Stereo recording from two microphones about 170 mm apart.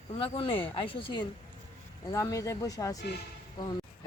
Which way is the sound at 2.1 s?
20° left (ahead or behind).